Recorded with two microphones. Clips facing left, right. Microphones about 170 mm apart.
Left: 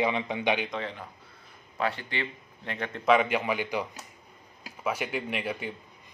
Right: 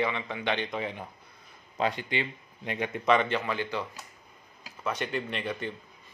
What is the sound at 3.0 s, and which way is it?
A man's voice, 5° left (ahead or behind).